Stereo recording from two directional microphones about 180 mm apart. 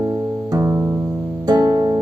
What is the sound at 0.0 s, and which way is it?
Music, 15° right (ahead or behind).